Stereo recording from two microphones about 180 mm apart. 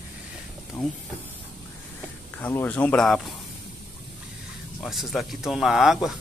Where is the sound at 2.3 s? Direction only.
10° left (ahead or behind).